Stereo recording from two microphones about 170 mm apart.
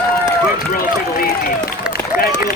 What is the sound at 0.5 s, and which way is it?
Speech, 55° left (ahead or behind).